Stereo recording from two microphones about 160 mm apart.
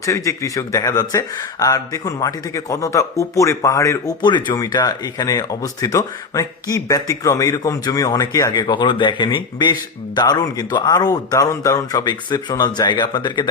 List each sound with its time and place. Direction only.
0.0 s speech: 20° left (ahead or behind)